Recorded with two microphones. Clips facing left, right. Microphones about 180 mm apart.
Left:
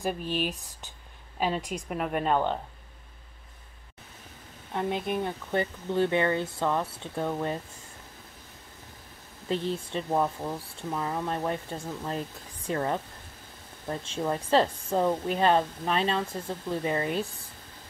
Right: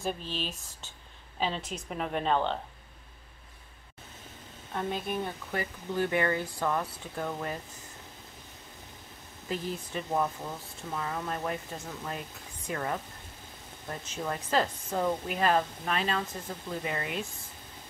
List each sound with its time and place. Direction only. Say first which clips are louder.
0.0 s a woman's voice: left 5 dB; 15° left (ahead or behind)
4.7 s speech: left 3 dB; 15° left (ahead or behind)
9.5 s speech: left 5 dB; 30° left (ahead or behind)